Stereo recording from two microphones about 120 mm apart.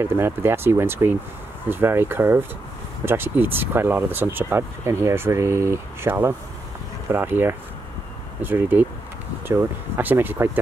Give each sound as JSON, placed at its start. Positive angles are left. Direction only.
{"t": 0.0, "sound": "speech", "side_deg": -20}